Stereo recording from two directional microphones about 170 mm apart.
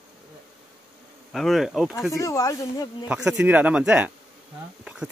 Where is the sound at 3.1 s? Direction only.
5° right (ahead or behind).